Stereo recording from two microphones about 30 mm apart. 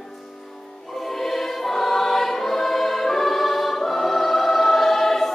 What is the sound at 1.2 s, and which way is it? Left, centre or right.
Choir, centre.